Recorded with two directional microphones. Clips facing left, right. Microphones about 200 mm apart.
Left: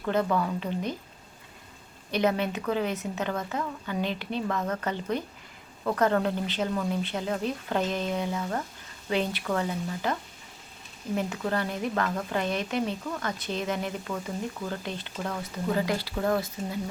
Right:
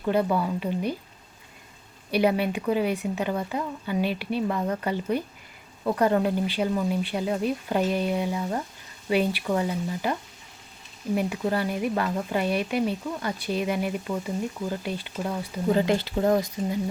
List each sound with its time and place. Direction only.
0.0 s speech: 15° right (ahead or behind)
2.0 s speech: 10° right (ahead or behind)
15.7 s speech: 25° right (ahead or behind)